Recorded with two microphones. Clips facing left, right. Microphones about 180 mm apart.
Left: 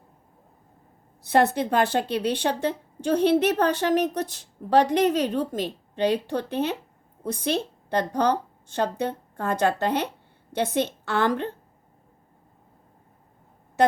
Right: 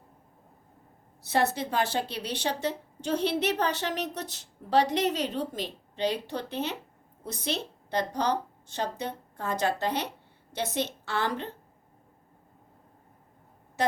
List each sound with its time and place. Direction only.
1.2 s a woman's voice: 55° left (ahead or behind)